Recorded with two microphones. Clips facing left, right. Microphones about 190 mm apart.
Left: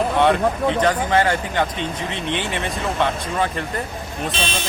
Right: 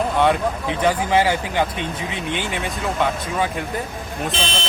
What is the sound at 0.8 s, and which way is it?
Speech, 10° right (ahead or behind).